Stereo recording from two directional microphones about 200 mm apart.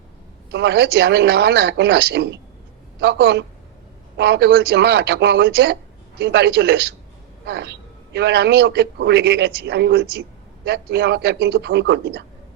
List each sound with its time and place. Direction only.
0.5 s a man's voice: 55° right (ahead or behind)